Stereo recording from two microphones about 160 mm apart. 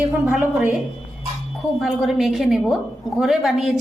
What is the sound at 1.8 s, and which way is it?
A woman's voice, centre (ahead or behind).